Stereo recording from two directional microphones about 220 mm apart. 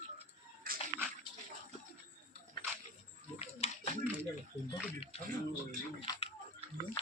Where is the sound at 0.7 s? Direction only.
40° right (ahead or behind).